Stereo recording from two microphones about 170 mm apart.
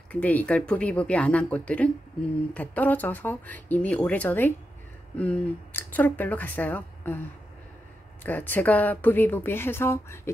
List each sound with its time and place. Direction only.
0.1 s speech: 10° left (ahead or behind)
8.2 s speech: 10° left (ahead or behind)